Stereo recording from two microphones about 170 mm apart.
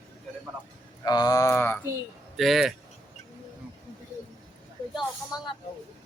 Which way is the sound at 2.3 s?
Centre (ahead or behind).